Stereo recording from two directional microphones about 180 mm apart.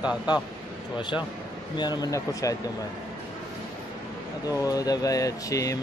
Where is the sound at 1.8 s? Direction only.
20° left (ahead or behind).